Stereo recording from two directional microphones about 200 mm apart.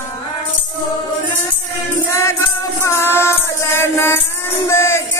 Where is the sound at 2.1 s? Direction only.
15° left (ahead or behind).